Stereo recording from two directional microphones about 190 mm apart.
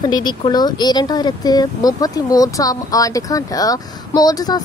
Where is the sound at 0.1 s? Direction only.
20° left (ahead or behind).